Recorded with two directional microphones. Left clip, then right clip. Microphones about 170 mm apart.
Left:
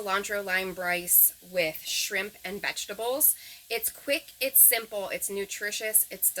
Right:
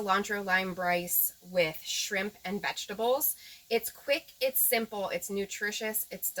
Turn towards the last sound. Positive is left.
turn(degrees=25)  # may be behind; listen again after turning